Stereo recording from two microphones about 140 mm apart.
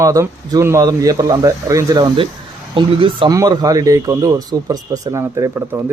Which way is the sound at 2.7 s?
35° right (ahead or behind).